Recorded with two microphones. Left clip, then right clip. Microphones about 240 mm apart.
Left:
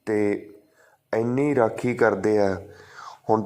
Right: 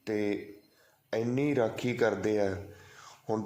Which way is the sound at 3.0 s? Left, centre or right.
Centre.